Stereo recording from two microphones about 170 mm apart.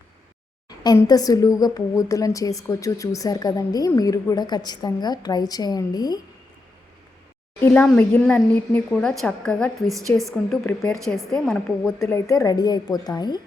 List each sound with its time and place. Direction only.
0.9 s a woman's voice: 20° left (ahead or behind)
7.6 s speech: 5° left (ahead or behind)
12.1 s a woman's voice: 20° left (ahead or behind)